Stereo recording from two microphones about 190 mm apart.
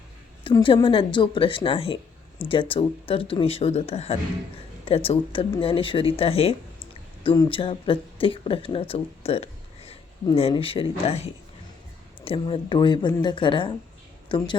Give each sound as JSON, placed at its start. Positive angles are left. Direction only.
{"t": 0.4, "sound": "a woman's voice", "side_deg": 25}